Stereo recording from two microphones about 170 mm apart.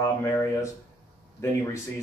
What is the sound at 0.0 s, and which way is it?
A man's voice, 20° left (ahead or behind).